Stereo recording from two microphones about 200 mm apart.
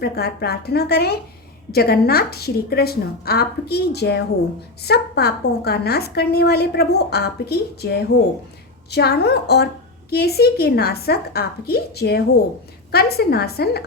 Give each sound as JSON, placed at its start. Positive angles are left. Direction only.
{"t": 0.0, "sound": "a woman's voice", "side_deg": 50}